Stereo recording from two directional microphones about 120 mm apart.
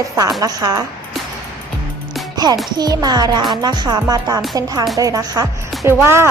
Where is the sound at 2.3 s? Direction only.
35° right (ahead or behind).